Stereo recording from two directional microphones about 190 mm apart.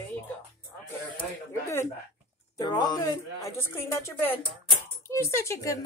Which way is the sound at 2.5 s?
20° left (ahead or behind).